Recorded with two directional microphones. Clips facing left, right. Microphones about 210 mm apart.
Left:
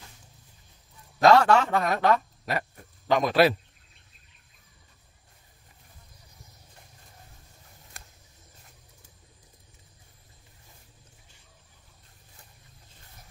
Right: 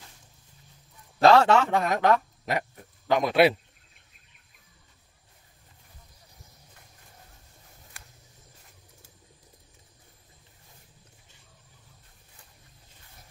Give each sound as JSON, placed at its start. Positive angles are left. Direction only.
{"t": 1.2, "sound": "a man's voice", "side_deg": -25}